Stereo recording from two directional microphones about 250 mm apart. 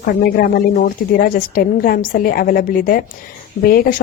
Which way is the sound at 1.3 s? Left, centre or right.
Left.